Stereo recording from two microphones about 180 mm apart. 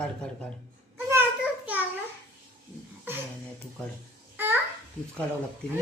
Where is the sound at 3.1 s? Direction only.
10° right (ahead or behind).